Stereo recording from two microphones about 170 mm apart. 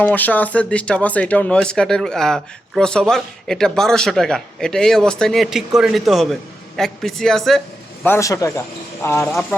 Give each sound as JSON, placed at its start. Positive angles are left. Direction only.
{"t": 0.0, "sound": "a man's voice", "side_deg": 10}
{"t": 8.0, "sound": "speech", "side_deg": 15}